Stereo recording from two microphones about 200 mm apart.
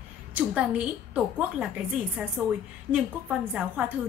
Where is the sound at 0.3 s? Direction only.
5° right (ahead or behind).